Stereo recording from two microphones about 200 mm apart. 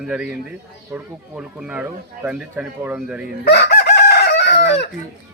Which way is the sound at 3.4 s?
55° left (ahead or behind).